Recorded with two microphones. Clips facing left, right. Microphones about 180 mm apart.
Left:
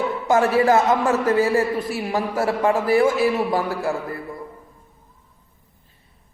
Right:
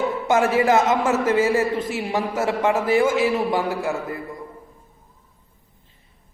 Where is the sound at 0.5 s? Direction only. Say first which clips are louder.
Left 1 dB; 20° right (ahead or behind).